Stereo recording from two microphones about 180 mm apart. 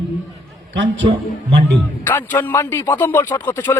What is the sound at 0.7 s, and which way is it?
Speech, 90° right.